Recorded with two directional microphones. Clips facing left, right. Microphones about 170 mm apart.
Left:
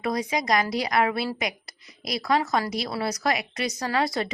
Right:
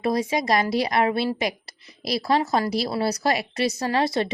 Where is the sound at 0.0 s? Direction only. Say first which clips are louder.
Right 4 dB; 30° right (ahead or behind).